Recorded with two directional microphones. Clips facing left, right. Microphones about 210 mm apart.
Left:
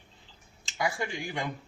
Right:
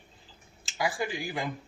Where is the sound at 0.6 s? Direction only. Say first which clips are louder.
Right 1 dB; 5° right (ahead or behind).